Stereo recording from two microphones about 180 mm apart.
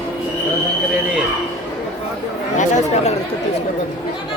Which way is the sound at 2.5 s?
40° left (ahead or behind).